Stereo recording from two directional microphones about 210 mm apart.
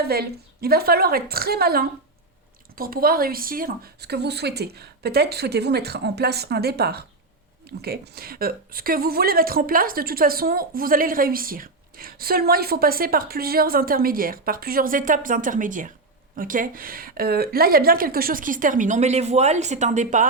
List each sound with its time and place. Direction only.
0.0 s a woman's voice: 50° right (ahead or behind)